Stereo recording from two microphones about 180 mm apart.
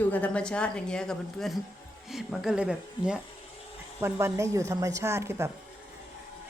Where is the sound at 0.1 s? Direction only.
5° left (ahead or behind).